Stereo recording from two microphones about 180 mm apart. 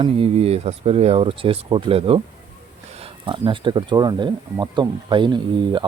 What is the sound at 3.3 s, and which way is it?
Speech, 25° right (ahead or behind).